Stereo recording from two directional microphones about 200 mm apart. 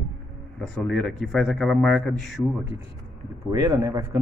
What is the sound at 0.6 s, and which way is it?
A man's voice, 5° left (ahead or behind).